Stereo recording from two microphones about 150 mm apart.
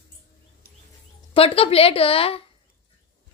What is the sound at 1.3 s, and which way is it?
A woman's voice, 40° left (ahead or behind).